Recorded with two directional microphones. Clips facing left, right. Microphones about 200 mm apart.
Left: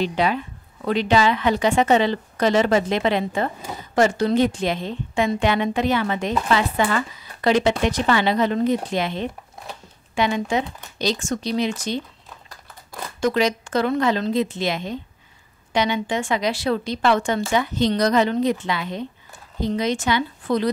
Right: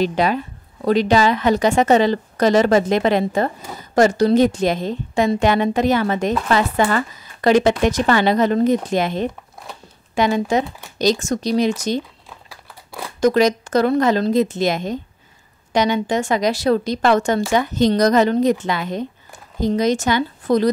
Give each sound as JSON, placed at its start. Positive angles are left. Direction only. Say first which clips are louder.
{"t": 0.0, "sound": "a woman's voice", "louder": "right 3 dB", "side_deg": -45}
{"t": 12.4, "sound": "a sound", "louder": "right 2 dB", "side_deg": -10}
{"t": 13.2, "sound": "a woman's voice", "louder": "right 5 dB", "side_deg": -40}